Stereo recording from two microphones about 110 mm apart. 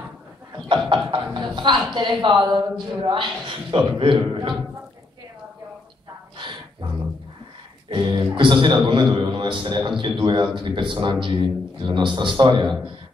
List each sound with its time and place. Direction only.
0.7 s music: 50° right (ahead or behind)
2.0 s a man's voice: 45° right (ahead or behind)
6.3 s a sound: 50° right (ahead or behind)
7.9 s a man's voice: 45° right (ahead or behind)